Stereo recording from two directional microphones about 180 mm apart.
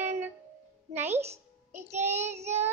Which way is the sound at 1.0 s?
35° right (ahead or behind).